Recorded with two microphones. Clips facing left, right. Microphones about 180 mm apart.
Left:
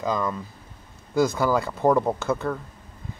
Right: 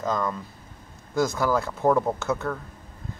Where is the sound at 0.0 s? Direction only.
Centre (ahead or behind).